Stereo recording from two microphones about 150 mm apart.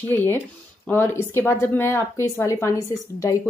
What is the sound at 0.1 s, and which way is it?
A woman's voice, 15° left (ahead or behind).